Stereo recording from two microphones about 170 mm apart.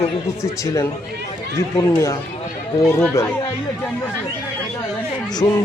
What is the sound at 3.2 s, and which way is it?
Speech, 15° left (ahead or behind).